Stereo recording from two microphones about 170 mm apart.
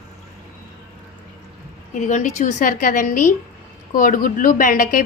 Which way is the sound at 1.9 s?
45° left (ahead or behind).